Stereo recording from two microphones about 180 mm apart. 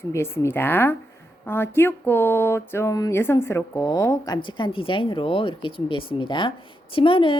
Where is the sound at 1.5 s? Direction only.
10° left (ahead or behind).